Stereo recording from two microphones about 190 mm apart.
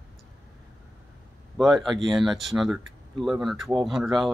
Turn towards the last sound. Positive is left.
turn(degrees=0)  # may be behind; listen again after turning